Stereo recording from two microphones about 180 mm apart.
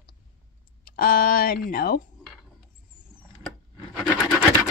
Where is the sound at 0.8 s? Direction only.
55° left (ahead or behind).